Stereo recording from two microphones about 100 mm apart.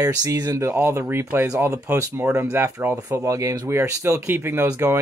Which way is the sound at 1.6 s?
30° right (ahead or behind).